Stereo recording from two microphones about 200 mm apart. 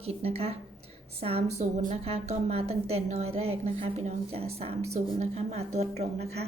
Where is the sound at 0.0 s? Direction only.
30° right (ahead or behind).